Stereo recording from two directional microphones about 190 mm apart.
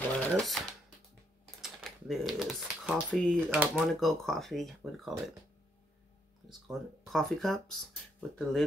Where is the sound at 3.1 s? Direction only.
5° left (ahead or behind).